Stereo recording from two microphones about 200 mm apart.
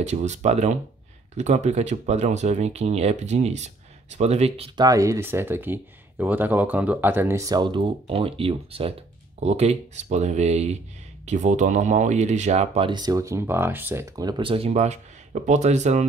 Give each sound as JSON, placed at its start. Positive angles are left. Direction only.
{"t": 0.0, "sound": "speech", "side_deg": -35}
{"t": 4.7, "sound": "speech", "side_deg": -15}